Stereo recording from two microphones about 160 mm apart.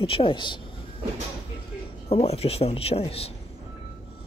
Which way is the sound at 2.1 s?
40° left (ahead or behind).